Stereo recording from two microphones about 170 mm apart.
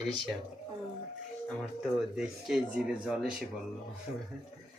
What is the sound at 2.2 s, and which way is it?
Speech, 5° right (ahead or behind).